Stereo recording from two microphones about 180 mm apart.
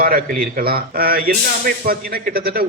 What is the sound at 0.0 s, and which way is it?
Speech, 55° right (ahead or behind).